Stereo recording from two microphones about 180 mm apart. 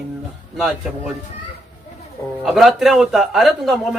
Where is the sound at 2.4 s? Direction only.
Centre (ahead or behind).